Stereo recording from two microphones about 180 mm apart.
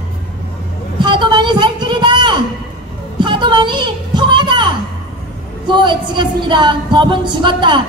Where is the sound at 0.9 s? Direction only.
25° right (ahead or behind).